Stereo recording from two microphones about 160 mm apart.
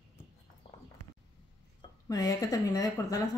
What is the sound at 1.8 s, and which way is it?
Speech, 25° left (ahead or behind).